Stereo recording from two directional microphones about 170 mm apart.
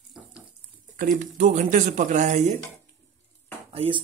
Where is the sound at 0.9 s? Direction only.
50° right (ahead or behind).